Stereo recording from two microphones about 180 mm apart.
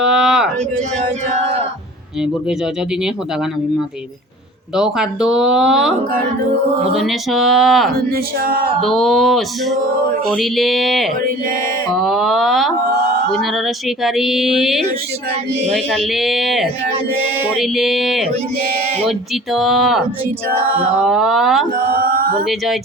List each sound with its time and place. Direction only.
0.0 s a sound: 5° right (ahead or behind)
4.8 s speech: 5° right (ahead or behind)
6.9 s speech: centre (ahead or behind)
7.9 s speech: 55° right (ahead or behind)
8.8 s speech: centre (ahead or behind)
14.0 s speech: centre (ahead or behind)
19.5 s speech: centre (ahead or behind)
21.8 s a sound: 55° right (ahead or behind)
22.4 s speech: centre (ahead or behind)